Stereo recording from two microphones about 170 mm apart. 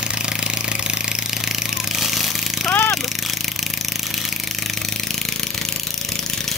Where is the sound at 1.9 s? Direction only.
Centre (ahead or behind).